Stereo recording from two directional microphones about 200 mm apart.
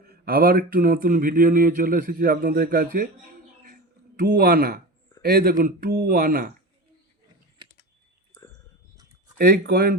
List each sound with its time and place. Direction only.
0.1 s speech: 45° right (ahead or behind)
9.4 s speech: 50° right (ahead or behind)